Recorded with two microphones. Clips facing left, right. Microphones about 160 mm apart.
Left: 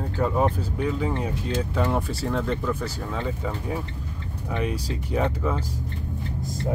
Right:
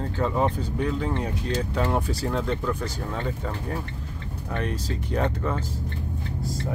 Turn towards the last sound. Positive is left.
turn(degrees=5)  # may be behind; listen again after turning